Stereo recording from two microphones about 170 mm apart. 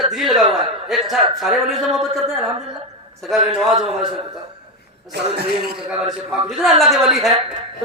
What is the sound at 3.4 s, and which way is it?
Speech, 35° right (ahead or behind).